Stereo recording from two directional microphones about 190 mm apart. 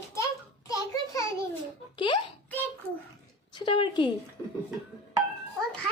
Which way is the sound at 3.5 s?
25° left (ahead or behind).